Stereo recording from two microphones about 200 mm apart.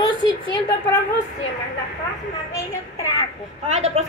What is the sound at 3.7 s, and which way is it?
Speech, 35° right (ahead or behind).